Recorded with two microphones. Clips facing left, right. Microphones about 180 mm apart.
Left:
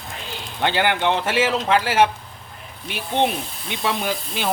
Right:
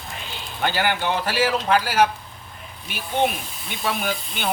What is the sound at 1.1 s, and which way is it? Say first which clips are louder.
Speech: left 1 dB; 25° left (ahead or behind).